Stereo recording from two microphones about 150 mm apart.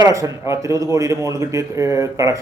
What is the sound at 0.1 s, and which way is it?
Speech, 20° right (ahead or behind).